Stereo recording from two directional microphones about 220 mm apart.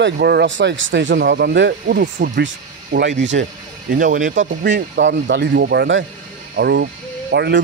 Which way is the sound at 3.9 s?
35° right (ahead or behind).